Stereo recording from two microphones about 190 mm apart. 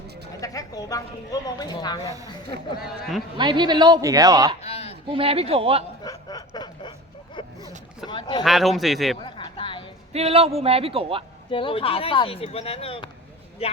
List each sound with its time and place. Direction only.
0.4 s a woman's voice: 20° left (ahead or behind)
3.3 s a woman's voice: 25° right (ahead or behind)
4.6 s a sound: 35° left (ahead or behind)
5.0 s a man's voice: 30° right (ahead or behind)
6.1 s snicker: 20° left (ahead or behind)
8.0 s a sound: 25° left (ahead or behind)
8.4 s speech: centre (ahead or behind)
9.2 s a sound: 25° left (ahead or behind)
10.1 s a man's voice: 30° right (ahead or behind)
11.5 s a woman's voice: 30° left (ahead or behind)